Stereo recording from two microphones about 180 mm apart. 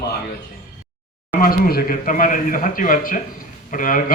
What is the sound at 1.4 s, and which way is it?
A man's voice, 55° left (ahead or behind).